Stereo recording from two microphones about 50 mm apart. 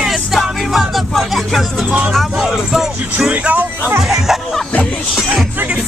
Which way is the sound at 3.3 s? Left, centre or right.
Right.